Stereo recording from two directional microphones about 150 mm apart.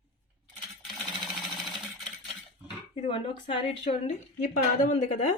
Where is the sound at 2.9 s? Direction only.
40° left (ahead or behind).